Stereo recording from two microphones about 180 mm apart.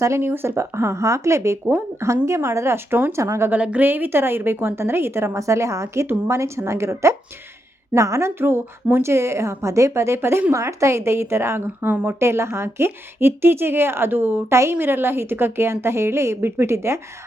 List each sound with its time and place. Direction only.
0.0 s a woman's voice: 15° right (ahead or behind)